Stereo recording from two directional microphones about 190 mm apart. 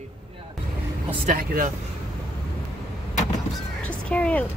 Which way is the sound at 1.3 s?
45° right (ahead or behind).